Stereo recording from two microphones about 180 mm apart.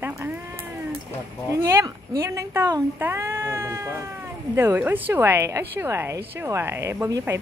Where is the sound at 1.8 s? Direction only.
20° right (ahead or behind).